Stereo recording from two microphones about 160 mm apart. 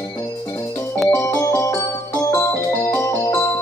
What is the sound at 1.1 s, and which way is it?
Music, 15° left (ahead or behind).